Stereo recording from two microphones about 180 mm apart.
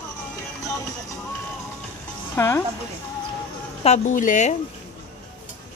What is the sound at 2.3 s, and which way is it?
Speech, 15° left (ahead or behind).